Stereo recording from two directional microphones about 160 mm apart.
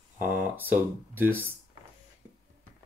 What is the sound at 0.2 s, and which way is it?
Speech, 15° right (ahead or behind).